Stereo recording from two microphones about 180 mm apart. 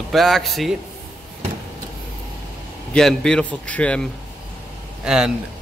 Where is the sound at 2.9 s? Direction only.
5° left (ahead or behind).